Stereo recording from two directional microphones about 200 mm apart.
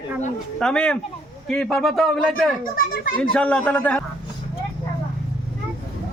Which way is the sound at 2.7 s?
45° left (ahead or behind).